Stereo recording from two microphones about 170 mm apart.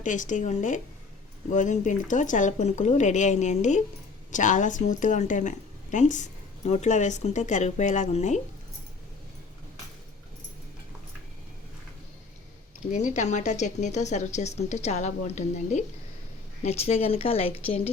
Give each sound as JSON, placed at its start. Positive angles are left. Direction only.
{"t": 0.0, "sound": "speech", "side_deg": 50}
{"t": 12.9, "sound": "speech", "side_deg": 45}